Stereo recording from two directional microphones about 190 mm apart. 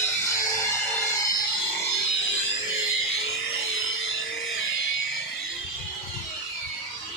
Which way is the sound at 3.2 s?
80° left.